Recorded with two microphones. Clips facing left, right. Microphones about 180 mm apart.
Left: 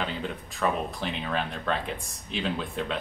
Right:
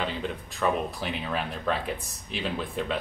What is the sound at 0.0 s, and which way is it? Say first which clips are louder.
Speech: right 1 dB; centre (ahead or behind).